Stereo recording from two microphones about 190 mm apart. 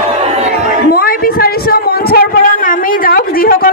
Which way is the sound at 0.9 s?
50° left (ahead or behind).